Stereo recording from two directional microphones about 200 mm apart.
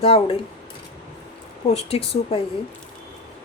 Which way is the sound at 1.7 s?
30° left (ahead or behind).